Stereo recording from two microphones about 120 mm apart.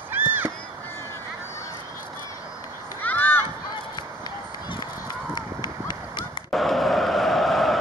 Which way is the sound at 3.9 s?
40° left (ahead or behind).